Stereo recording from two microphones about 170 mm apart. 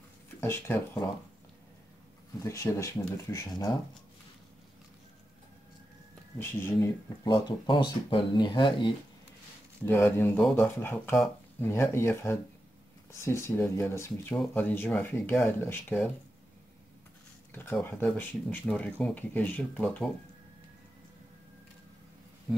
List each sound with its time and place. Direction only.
0.4 s speech: 15° left (ahead or behind)
2.4 s speech: 20° left (ahead or behind)
6.3 s speech: 15° left (ahead or behind)
7.2 s speech: 30° left (ahead or behind)
9.8 s speech: 15° left (ahead or behind)
17.5 s speech: 10° left (ahead or behind)